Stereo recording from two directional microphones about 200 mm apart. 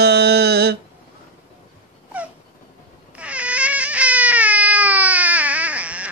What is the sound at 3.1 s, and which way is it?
Baby cry, 5° right (ahead or behind).